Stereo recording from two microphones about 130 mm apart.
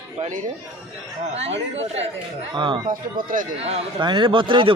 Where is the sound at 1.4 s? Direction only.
55° right (ahead or behind).